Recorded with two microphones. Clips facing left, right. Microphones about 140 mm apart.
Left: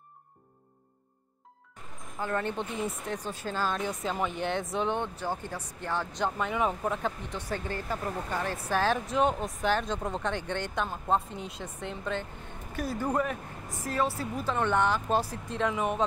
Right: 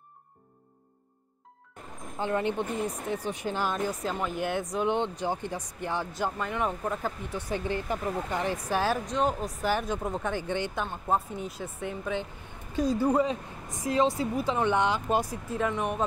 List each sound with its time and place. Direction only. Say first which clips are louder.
2.3 s speech: right 3 dB; 15° right (ahead or behind)
3.7 s speech: right 1 dB; 5° right (ahead or behind)
4.8 s speech: right 3 dB; 15° right (ahead or behind)
6.3 s speech: left 1 dB; 5° left (ahead or behind)
9.0 s speech: left 1 dB; centre (ahead or behind)